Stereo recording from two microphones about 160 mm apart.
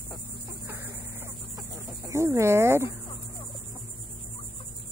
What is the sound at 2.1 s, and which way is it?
Speech, 15° right (ahead or behind).